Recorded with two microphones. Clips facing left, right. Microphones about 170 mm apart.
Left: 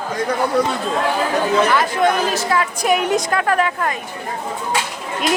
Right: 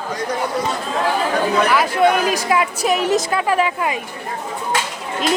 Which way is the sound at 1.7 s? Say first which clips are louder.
Right 1 dB; 10° right (ahead or behind).